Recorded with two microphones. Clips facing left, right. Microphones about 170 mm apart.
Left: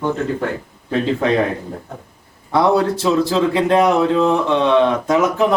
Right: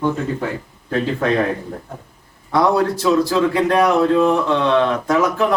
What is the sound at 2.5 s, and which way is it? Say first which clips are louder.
Speech: left 1 dB; 25° left (ahead or behind).